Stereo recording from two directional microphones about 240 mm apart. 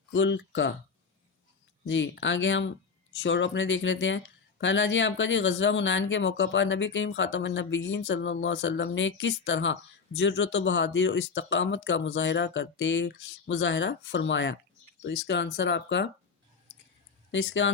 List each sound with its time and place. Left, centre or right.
0.1 s speech: left
1.9 s speech: left
17.3 s speech: left